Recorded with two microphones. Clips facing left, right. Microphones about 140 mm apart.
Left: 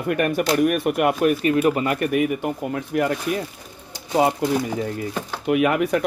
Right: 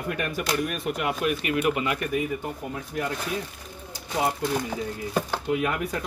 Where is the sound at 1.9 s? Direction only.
75° left (ahead or behind).